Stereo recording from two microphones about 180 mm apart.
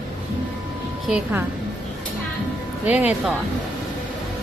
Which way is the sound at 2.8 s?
10° right (ahead or behind).